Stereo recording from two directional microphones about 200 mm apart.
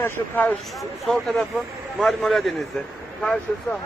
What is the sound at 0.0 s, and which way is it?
Speech, 10° left (ahead or behind).